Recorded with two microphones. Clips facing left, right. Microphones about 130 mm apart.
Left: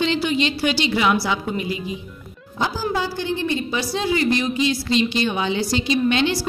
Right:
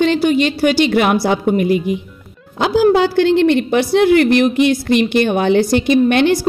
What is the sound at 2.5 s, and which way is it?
A woman's voice, 75° right (ahead or behind).